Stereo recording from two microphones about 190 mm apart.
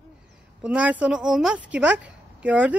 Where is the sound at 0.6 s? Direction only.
5° right (ahead or behind).